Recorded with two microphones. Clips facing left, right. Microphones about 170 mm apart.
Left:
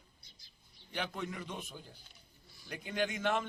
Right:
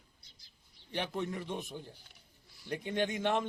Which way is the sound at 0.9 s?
25° right (ahead or behind).